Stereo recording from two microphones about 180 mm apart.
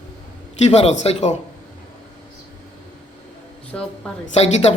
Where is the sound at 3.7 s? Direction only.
5° left (ahead or behind).